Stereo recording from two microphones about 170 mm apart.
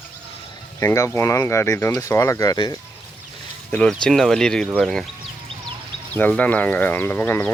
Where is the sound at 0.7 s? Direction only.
15° left (ahead or behind).